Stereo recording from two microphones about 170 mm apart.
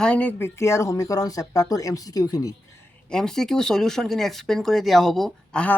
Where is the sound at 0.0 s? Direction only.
10° left (ahead or behind).